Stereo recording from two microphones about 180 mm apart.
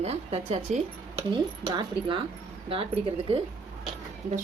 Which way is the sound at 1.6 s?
25° right (ahead or behind).